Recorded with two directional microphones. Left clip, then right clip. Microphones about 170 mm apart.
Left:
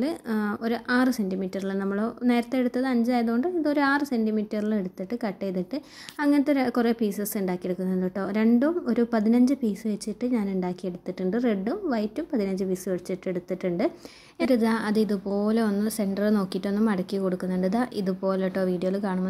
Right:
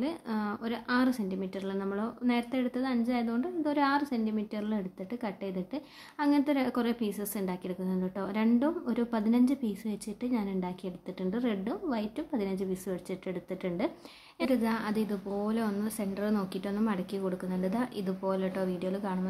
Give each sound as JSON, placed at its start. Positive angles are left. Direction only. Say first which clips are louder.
{"t": 0.0, "sound": "a woman's voice", "louder": "left 6 dB", "side_deg": 20}
{"t": 14.4, "sound": "a woman's voice", "louder": "left 6 dB", "side_deg": 30}